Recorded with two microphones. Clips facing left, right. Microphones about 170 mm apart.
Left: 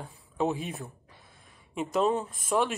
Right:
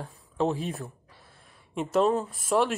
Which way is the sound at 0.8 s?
20° left (ahead or behind).